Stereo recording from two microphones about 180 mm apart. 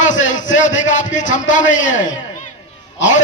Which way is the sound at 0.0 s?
45° left (ahead or behind).